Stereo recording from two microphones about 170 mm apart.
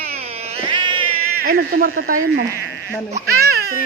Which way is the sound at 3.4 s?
65° right (ahead or behind).